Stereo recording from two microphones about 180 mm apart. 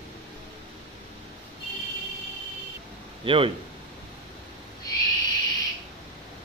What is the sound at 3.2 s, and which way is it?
Speech, 30° right (ahead or behind).